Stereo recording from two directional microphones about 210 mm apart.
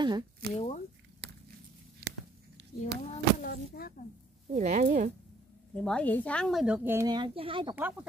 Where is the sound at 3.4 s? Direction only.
45° left (ahead or behind).